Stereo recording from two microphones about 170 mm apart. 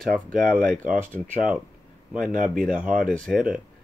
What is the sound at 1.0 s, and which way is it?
Speech, 10° right (ahead or behind).